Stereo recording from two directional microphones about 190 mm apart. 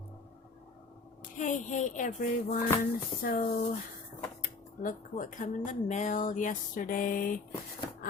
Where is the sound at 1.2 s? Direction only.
40° left (ahead or behind).